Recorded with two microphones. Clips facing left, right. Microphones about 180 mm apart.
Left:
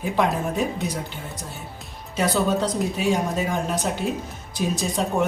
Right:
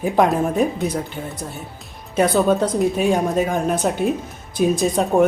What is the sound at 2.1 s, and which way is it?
A woman's voice, 50° right (ahead or behind).